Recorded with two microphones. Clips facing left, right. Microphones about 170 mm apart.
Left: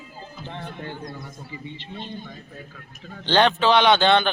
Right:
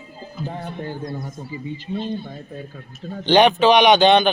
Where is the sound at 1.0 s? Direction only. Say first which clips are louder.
Right 6 dB; 20° right (ahead or behind).